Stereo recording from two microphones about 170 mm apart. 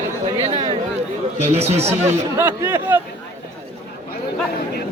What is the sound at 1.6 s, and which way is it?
Speech, 40° right (ahead or behind).